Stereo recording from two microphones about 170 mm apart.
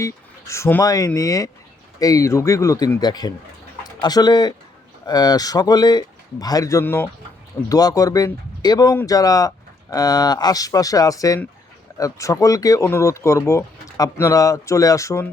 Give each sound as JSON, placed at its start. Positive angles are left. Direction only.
{"t": 0.0, "sound": "speech", "side_deg": 15}